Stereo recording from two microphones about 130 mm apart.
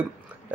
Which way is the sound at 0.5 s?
15° right (ahead or behind).